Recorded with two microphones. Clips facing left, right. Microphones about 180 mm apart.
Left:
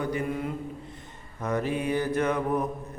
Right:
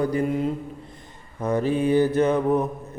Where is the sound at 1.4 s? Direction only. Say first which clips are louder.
Right 6 dB; 30° right (ahead or behind).